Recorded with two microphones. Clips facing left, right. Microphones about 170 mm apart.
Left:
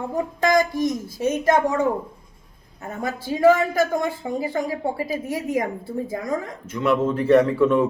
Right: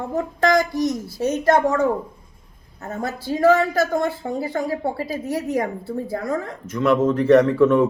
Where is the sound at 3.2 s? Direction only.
15° left (ahead or behind).